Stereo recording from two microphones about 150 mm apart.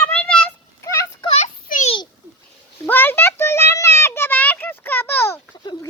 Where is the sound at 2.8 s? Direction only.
10° left (ahead or behind).